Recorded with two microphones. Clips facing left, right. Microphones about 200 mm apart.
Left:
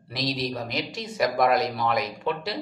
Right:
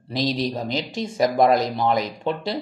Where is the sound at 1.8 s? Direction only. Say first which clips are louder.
Right 4 dB; 30° right (ahead or behind).